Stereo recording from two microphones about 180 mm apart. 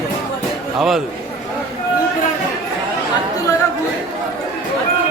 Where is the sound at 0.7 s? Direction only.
Centre (ahead or behind).